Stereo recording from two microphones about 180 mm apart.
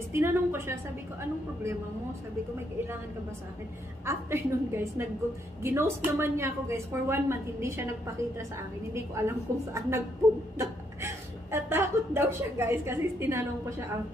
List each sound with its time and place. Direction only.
0.1 s a woman's voice: 15° right (ahead or behind)
4.0 s a woman's voice: 15° right (ahead or behind)
8.9 s a woman's voice: 15° right (ahead or behind)
11.5 s a woman's voice: 10° right (ahead or behind)